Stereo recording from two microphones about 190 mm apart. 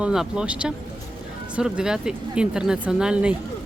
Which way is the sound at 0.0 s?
5° right (ahead or behind).